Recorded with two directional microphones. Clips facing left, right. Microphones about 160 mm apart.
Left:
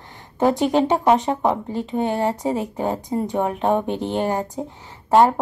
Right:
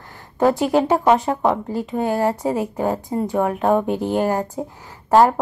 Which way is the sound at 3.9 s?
5° right (ahead or behind).